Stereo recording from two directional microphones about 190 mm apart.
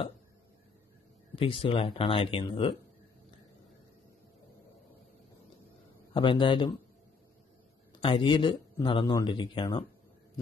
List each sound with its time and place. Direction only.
1.3 s a man's voice: 30° left (ahead or behind)
6.1 s a man's voice: 25° left (ahead or behind)
7.9 s a man's voice: 25° left (ahead or behind)